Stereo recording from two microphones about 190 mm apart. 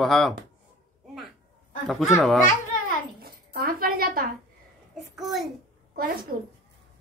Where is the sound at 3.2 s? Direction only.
50° right (ahead or behind).